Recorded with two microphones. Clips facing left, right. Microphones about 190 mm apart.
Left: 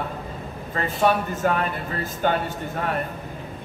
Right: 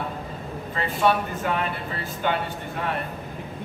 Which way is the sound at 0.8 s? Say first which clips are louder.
Left 1 dB; 45° left (ahead or behind).